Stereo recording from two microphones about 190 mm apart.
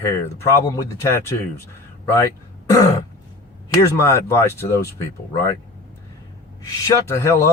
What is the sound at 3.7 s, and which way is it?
Speech, 15° left (ahead or behind).